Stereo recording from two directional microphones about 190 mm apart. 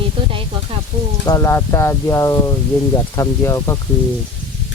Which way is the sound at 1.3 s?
15° left (ahead or behind).